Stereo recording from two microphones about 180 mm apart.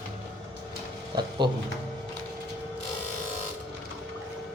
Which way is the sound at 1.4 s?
25° right (ahead or behind).